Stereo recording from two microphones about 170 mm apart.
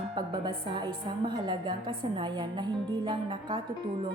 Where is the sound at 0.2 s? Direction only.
25° right (ahead or behind).